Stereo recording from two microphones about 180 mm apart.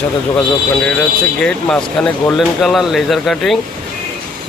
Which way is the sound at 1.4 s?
5° left (ahead or behind).